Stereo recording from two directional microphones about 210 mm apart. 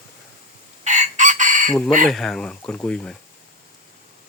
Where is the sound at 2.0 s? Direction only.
Centre (ahead or behind).